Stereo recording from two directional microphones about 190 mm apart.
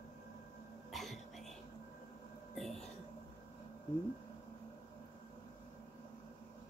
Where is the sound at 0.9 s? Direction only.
Centre (ahead or behind).